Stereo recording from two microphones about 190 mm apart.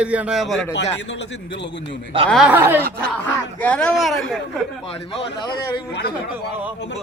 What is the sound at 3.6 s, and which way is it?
Speech, 5° left (ahead or behind).